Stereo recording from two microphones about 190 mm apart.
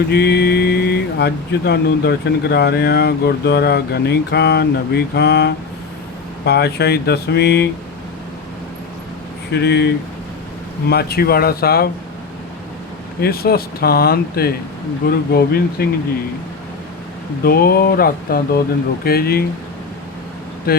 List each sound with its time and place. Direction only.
0.1 s speech: 60° left (ahead or behind)
9.5 s speech: 60° left (ahead or behind)
13.2 s speech: 55° left (ahead or behind)
17.4 s speech: 55° left (ahead or behind)
20.7 s speech: 50° left (ahead or behind)